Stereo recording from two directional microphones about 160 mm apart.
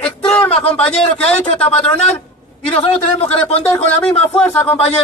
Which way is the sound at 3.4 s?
35° left (ahead or behind).